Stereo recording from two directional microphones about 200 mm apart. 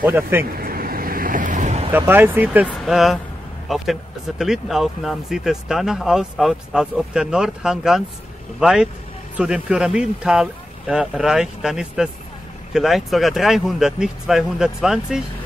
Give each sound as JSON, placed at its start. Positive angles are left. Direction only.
{"t": 0.0, "sound": "speech", "side_deg": -10}
{"t": 0.6, "sound": "waves", "side_deg": -45}
{"t": 1.9, "sound": "speech", "side_deg": -10}